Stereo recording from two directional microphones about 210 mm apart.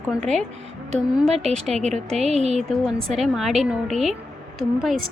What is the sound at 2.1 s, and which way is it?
Speech, 30° right (ahead or behind).